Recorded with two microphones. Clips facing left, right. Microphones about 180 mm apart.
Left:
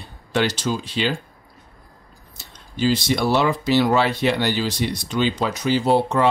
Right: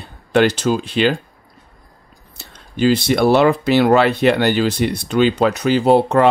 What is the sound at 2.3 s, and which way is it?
Speech, 60° right (ahead or behind).